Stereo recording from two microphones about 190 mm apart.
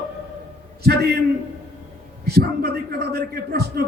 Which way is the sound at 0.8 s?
55° right (ahead or behind).